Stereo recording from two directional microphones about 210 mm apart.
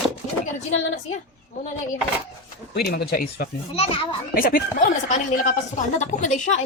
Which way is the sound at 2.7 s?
50° left (ahead or behind).